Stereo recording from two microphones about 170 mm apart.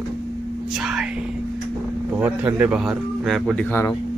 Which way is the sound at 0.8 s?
5° right (ahead or behind).